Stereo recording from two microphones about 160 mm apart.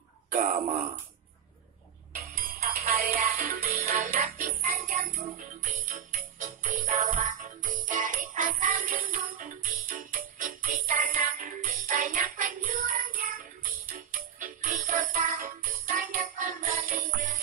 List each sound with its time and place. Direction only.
0.3 s wail: 50° right (ahead or behind)
2.1 s music: 60° right (ahead or behind)